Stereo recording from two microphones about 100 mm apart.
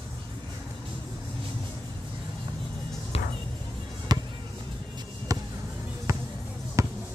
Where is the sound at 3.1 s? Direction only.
80° left.